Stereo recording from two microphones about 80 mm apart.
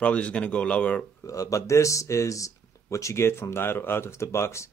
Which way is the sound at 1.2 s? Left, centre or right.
Left.